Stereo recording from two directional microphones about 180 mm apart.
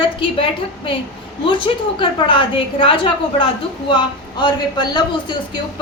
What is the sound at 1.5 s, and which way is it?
A woman's voice, 25° left (ahead or behind).